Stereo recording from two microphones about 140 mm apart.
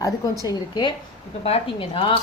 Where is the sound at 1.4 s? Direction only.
45° left (ahead or behind).